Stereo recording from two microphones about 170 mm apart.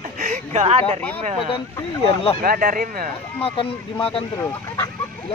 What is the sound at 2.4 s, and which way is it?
Speech, 55° right (ahead or behind).